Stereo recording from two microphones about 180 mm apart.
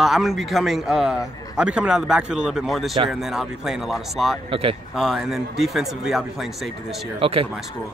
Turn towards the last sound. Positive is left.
turn(degrees=-30)  # may be behind; listen again after turning